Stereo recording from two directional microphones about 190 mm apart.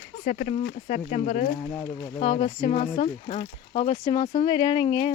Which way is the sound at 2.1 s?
30° left (ahead or behind).